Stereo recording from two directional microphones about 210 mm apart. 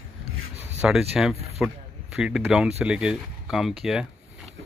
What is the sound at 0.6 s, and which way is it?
Speech, 10° right (ahead or behind).